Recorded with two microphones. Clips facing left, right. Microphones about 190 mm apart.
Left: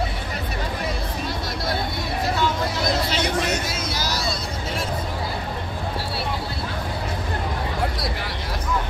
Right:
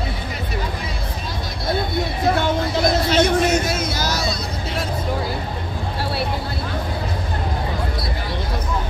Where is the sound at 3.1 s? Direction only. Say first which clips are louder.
Right 7 dB; 50° right (ahead or behind).